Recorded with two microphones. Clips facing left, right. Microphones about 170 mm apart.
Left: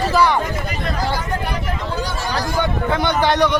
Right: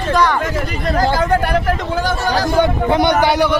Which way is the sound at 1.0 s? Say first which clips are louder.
Right 10 dB; 90° right.